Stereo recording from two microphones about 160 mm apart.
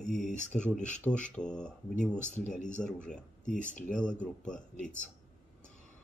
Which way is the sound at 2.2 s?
50° left (ahead or behind).